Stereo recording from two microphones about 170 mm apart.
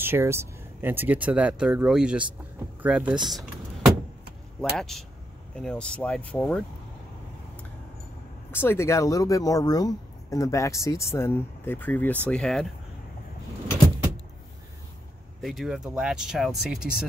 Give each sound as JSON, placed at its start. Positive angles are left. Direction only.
{"t": 0.0, "sound": "speech", "side_deg": -15}
{"t": 3.3, "sound": "vehicle", "side_deg": 0}
{"t": 4.7, "sound": "speech", "side_deg": 0}
{"t": 8.5, "sound": "speech", "side_deg": 15}
{"t": 15.4, "sound": "speech", "side_deg": 0}